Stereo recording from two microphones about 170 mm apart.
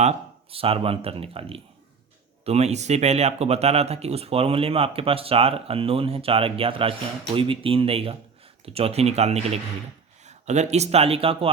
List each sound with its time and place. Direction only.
0.0 s speech: 35° right (ahead or behind)